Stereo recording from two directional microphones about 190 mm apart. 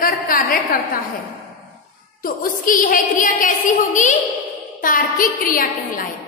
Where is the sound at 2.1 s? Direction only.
45° left (ahead or behind).